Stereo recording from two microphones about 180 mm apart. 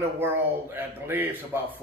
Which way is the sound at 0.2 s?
10° right (ahead or behind).